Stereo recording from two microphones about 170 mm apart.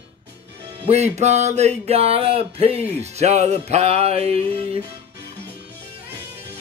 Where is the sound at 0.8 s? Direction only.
40° right (ahead or behind).